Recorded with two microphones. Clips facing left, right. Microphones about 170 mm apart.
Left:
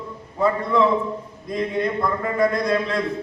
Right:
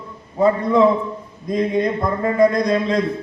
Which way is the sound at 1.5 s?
20° right (ahead or behind).